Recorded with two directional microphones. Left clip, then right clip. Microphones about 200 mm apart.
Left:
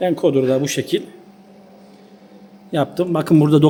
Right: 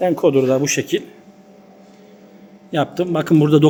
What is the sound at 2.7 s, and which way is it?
Speech, 20° left (ahead or behind).